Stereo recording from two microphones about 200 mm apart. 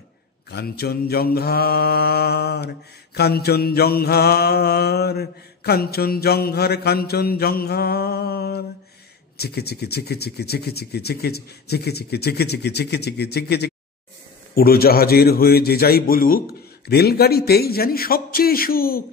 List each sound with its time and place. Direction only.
0.5 s mantra: 55° left (ahead or behind)